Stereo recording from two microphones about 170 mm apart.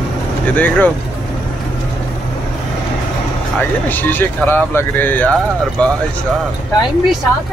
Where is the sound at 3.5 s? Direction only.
10° left (ahead or behind).